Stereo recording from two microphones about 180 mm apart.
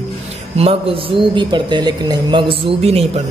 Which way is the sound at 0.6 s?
30° right (ahead or behind).